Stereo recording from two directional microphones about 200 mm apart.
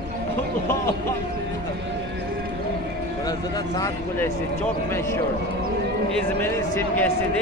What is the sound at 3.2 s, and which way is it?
Speech, 20° left (ahead or behind).